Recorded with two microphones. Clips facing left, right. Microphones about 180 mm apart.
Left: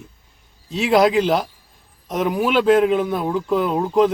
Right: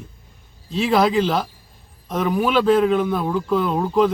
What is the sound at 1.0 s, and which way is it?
Speech, 15° left (ahead or behind).